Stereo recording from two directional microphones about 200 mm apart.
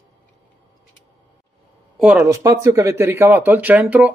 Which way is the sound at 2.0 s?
10° right (ahead or behind).